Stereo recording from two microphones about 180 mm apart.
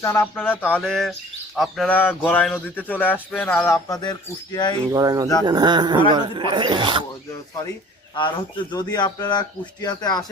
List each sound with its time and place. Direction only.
0.0 s a sound: 15° left (ahead or behind)
4.9 s speech: 20° right (ahead or behind)
8.1 s speech: 25° left (ahead or behind)